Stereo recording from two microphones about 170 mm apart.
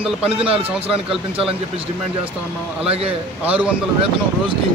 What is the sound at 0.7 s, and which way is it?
Speech, 5° right (ahead or behind).